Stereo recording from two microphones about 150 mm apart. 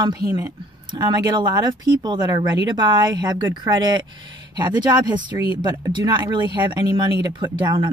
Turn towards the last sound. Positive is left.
turn(degrees=-30)  # may be behind; listen again after turning